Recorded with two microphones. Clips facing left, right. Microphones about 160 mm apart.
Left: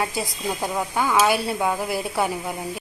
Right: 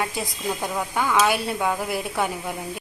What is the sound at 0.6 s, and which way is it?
Speech, 10° left (ahead or behind).